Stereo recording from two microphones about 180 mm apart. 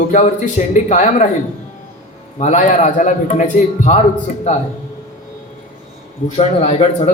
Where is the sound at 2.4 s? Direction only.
45° left (ahead or behind).